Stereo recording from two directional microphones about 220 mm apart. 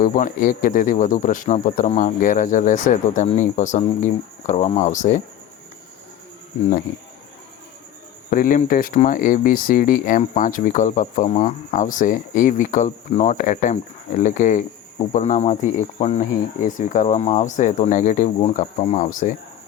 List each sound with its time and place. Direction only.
0.0 s speech: 40° left (ahead or behind)
8.3 s speech: 35° left (ahead or behind)